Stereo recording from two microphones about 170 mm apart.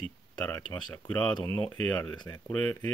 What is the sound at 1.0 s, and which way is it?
Speech, 10° left (ahead or behind).